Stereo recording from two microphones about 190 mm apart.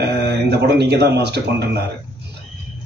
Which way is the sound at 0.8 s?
60° right (ahead or behind).